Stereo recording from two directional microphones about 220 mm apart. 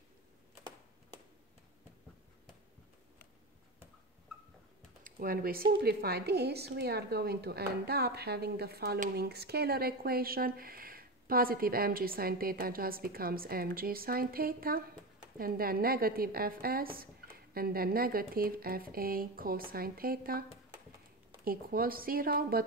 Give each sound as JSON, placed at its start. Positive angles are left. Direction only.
{"t": 5.0, "sound": "a woman's voice", "side_deg": -40}
{"t": 21.5, "sound": "speech", "side_deg": -40}